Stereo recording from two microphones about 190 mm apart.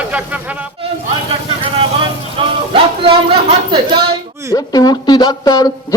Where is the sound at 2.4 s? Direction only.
30° right (ahead or behind).